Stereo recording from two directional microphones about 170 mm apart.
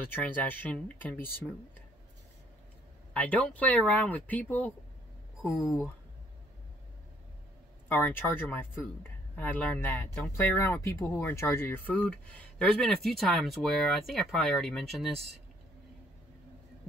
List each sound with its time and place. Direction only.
0.1 s speech: 10° left (ahead or behind)
3.1 s speech: 10° left (ahead or behind)
7.9 s speech: 10° left (ahead or behind)